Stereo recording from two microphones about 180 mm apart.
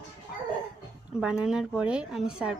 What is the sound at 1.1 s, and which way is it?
Speech, 5° right (ahead or behind).